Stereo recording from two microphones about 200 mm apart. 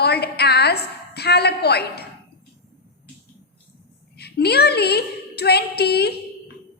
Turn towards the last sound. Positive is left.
turn(degrees=55)  # may be behind; listen again after turning